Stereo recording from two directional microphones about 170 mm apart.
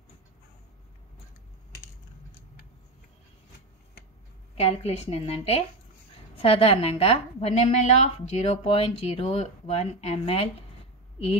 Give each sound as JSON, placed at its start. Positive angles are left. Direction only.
{"t": 4.6, "sound": "a woman's voice", "side_deg": 35}